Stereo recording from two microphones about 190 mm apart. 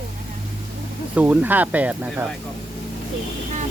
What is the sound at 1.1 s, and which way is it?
Speech, 10° right (ahead or behind).